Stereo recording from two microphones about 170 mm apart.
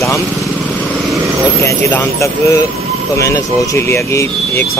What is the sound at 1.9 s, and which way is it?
Speech, 15° left (ahead or behind).